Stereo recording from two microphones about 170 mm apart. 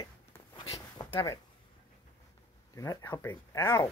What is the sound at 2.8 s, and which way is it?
Speech, 20° left (ahead or behind).